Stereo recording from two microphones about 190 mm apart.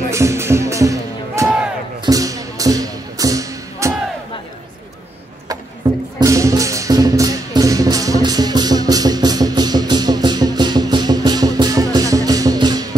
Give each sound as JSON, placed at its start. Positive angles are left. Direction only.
{"t": 0.1, "sound": "music", "side_deg": -15}
{"t": 6.1, "sound": "music", "side_deg": -15}